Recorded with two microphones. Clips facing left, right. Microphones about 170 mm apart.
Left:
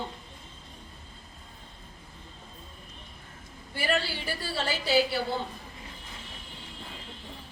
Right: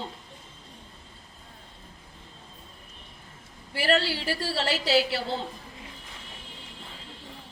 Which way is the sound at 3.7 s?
90° right.